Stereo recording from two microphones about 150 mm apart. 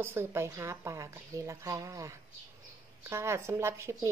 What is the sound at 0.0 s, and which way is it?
Speech, 15° right (ahead or behind).